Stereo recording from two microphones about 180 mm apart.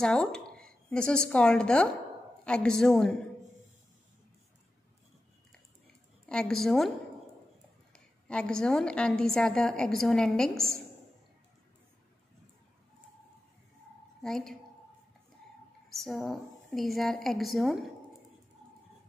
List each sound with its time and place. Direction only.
0.0 s a woman's voice: 5° left (ahead or behind)
6.2 s a woman's voice: 5° left (ahead or behind)
7.9 s a woman's voice: 5° left (ahead or behind)
14.2 s a woman's voice: centre (ahead or behind)
15.9 s a woman's voice: centre (ahead or behind)